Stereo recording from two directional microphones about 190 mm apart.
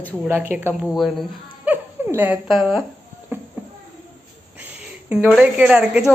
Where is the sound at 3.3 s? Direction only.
10° right (ahead or behind).